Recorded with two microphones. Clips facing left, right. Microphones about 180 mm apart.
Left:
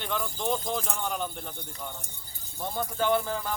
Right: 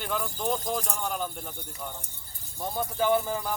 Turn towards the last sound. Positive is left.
turn(degrees=-10)  # may be behind; listen again after turning